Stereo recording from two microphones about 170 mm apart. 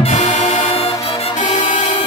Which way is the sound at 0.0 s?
45° left (ahead or behind).